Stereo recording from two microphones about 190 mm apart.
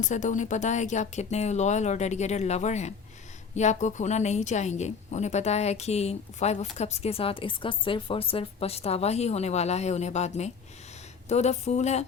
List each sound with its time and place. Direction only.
0.0 s a woman's voice: 40° left (ahead or behind)